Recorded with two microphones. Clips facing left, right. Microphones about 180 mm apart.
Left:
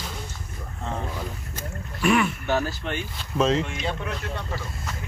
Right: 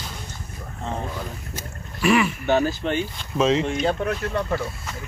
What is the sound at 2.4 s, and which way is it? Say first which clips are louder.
Speech: right 5 dB; 25° right (ahead or behind).